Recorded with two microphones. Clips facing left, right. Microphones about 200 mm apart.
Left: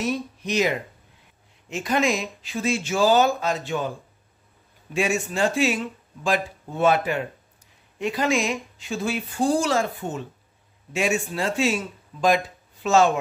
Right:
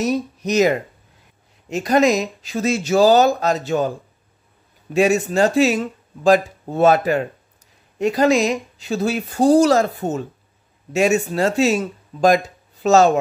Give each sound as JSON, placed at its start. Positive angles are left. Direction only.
{"t": 0.0, "sound": "speech", "side_deg": -40}
{"t": 4.9, "sound": "speech", "side_deg": -40}